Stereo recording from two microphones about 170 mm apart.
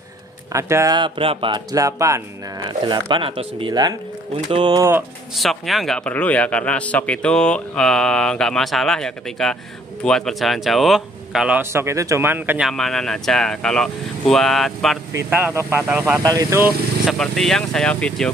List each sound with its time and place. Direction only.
0.5 s speech: 15° right (ahead or behind)
0.9 s speech: 30° right (ahead or behind)
5.3 s speech: centre (ahead or behind)
15.1 s speech: 10° right (ahead or behind)
16.2 s speech: 20° right (ahead or behind)
17.0 s speech: centre (ahead or behind)